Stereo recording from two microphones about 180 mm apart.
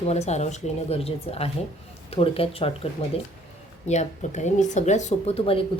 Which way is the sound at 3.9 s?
40° left (ahead or behind).